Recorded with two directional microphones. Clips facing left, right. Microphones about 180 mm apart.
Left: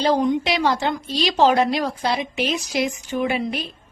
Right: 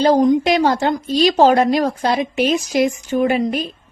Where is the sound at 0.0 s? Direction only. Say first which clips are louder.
Right 6 dB; 45° right (ahead or behind).